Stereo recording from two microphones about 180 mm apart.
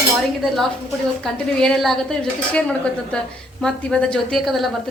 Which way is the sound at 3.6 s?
5° left (ahead or behind).